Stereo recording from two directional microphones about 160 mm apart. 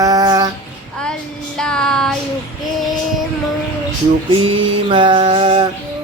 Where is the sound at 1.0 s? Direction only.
5° left (ahead or behind).